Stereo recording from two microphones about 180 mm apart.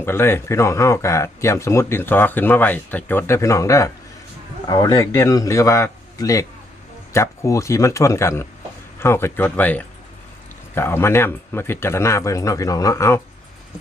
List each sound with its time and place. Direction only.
0.0 s speech: 15° left (ahead or behind)